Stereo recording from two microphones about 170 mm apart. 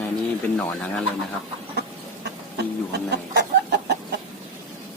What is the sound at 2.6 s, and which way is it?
Chicken, 75° right (ahead or behind).